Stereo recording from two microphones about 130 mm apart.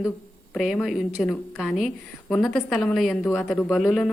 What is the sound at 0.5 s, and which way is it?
A woman's voice, centre (ahead or behind).